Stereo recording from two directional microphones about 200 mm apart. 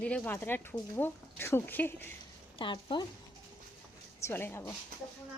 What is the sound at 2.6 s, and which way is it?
Speech, 25° left (ahead or behind).